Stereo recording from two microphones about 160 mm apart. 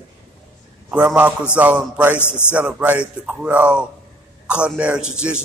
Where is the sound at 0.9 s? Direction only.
10° right (ahead or behind).